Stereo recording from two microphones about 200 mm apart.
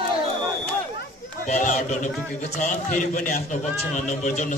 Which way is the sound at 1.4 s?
35° left (ahead or behind).